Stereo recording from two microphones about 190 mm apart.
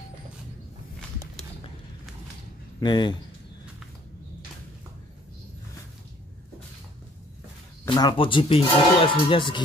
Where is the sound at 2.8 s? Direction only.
25° left (ahead or behind).